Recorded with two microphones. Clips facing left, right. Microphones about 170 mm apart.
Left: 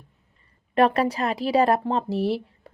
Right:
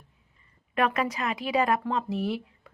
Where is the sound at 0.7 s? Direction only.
35° left (ahead or behind).